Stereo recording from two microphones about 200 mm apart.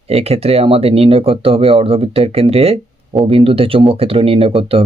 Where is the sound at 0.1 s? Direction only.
30° right (ahead or behind).